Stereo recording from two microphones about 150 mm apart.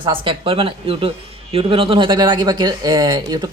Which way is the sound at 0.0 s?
35° right (ahead or behind).